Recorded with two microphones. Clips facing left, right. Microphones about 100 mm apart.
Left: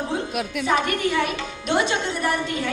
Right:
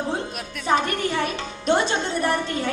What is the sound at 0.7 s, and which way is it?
A woman's voice, 35° right (ahead or behind).